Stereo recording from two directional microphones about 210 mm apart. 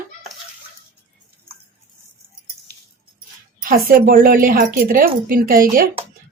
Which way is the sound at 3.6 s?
40° right (ahead or behind).